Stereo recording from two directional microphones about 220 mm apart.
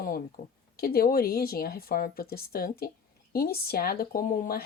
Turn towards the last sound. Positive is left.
turn(degrees=40)  # may be behind; listen again after turning